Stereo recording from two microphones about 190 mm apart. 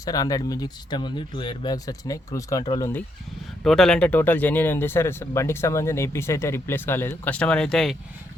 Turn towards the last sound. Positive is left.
turn(degrees=0)  # may be behind; listen again after turning